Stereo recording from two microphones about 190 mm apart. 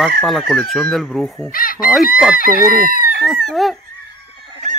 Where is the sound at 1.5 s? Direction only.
50° left (ahead or behind).